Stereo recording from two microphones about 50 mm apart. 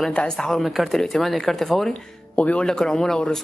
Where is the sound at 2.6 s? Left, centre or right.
Centre.